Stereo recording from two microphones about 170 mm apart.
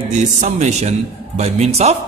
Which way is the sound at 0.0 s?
45° right (ahead or behind).